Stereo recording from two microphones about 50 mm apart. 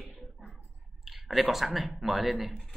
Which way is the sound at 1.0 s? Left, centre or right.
Centre.